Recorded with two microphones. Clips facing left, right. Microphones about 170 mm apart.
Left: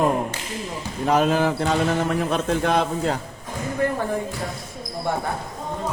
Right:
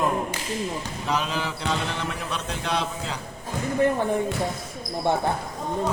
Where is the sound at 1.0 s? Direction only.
50° left (ahead or behind).